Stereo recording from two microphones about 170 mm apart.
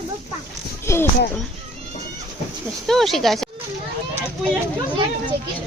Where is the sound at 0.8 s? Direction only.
15° left (ahead or behind).